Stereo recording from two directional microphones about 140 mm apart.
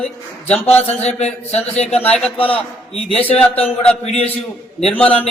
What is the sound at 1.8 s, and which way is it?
Speech, 10° left (ahead or behind).